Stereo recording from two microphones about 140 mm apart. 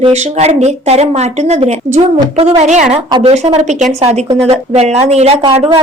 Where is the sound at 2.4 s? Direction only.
50° right (ahead or behind).